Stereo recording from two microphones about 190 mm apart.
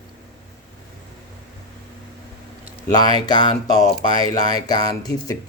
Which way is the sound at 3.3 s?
25° left (ahead or behind).